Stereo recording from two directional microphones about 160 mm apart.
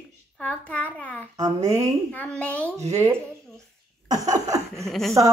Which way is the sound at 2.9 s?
20° right (ahead or behind).